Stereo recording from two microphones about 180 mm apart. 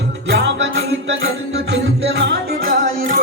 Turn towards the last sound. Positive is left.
turn(degrees=-50)  # may be behind; listen again after turning